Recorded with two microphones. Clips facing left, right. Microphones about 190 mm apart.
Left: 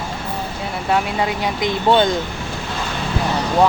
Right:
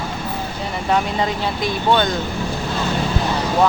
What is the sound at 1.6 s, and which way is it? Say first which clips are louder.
Speech: left 3 dB; 25° left (ahead or behind).